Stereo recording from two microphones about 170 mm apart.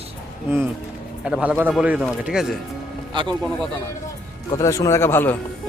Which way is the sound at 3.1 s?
30° right (ahead or behind).